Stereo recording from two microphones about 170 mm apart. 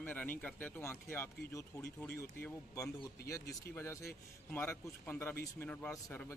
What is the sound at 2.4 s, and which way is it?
Speech, 20° left (ahead or behind).